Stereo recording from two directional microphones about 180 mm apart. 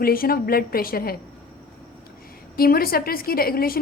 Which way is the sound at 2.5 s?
55° left (ahead or behind).